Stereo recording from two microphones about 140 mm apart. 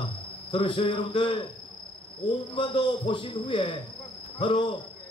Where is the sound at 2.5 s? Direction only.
35° left (ahead or behind).